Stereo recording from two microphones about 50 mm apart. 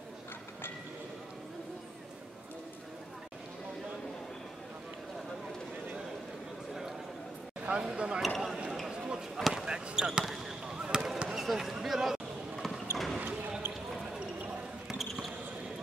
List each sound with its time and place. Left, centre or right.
7.6 s speech: centre
8.9 s a sound: centre
9.4 s basketball bounce: centre
9.7 s speech: centre
10.2 s speech: centre
10.7 s basketball bounce: centre
14.9 s basketball bounce: centre